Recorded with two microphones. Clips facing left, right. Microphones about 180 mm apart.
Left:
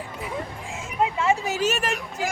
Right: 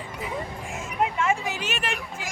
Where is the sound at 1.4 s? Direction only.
40° left (ahead or behind).